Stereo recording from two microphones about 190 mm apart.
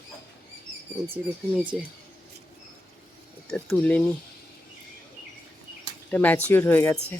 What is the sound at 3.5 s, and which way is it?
Speech, 5° left (ahead or behind).